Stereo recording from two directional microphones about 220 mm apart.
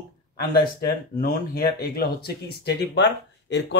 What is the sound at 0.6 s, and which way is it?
Speech, 45° left (ahead or behind).